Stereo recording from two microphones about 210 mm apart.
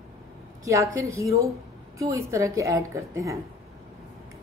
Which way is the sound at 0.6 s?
15° right (ahead or behind).